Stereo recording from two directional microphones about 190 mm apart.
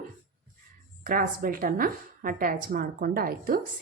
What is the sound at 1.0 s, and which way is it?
A woman's voice, 50° right (ahead or behind).